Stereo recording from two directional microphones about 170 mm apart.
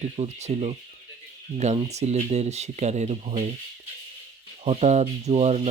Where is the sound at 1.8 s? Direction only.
40° right (ahead or behind).